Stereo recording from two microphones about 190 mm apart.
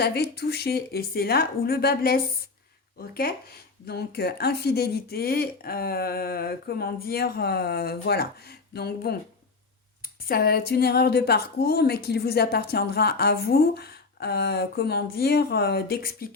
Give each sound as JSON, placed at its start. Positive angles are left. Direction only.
{"t": 0.0, "sound": "a woman's voice", "side_deg": 60}
{"t": 3.8, "sound": "a woman's voice", "side_deg": 55}
{"t": 10.2, "sound": "a woman's voice", "side_deg": 55}